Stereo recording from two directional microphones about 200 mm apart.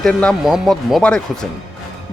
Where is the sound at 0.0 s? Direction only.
5° left (ahead or behind).